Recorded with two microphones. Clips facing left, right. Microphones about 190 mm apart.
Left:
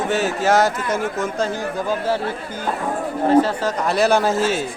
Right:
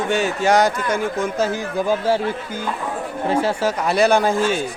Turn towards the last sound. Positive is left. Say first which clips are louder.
# even
turn(degrees=5)  # may be behind; listen again after turning